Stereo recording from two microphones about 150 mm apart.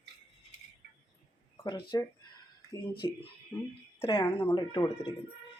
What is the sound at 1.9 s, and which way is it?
Speech, 25° left (ahead or behind).